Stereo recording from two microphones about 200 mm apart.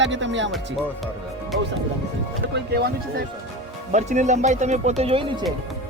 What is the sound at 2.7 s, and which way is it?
Speech, 55° right (ahead or behind).